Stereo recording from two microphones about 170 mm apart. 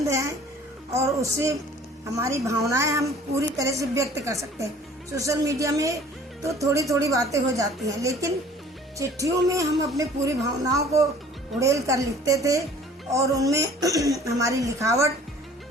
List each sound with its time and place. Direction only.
0.1 s music: 20° right (ahead or behind)
0.9 s a man's voice: 15° right (ahead or behind)